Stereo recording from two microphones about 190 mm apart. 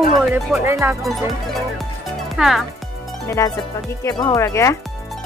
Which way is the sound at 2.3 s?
Centre (ahead or behind).